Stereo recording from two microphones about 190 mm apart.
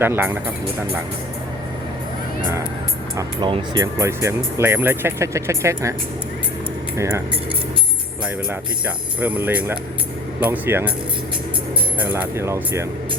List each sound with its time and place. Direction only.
0.0 s speech: 10° right (ahead or behind)
3.2 s speech: 25° right (ahead or behind)
6.9 s speech: 15° right (ahead or behind)
9.2 s speech: 10° right (ahead or behind)
12.0 s speech: 10° right (ahead or behind)